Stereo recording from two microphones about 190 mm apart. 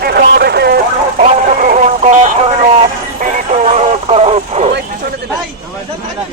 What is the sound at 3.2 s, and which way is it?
Radio, 40° right (ahead or behind).